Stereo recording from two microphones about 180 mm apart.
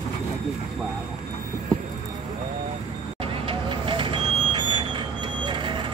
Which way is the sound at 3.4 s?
30° right (ahead or behind).